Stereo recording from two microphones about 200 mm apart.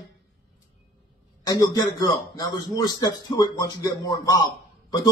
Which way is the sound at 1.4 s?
20° left (ahead or behind).